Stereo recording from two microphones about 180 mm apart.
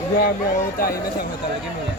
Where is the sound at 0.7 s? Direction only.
55° left (ahead or behind).